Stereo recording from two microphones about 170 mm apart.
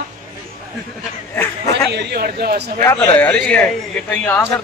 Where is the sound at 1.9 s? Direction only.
75° right (ahead or behind).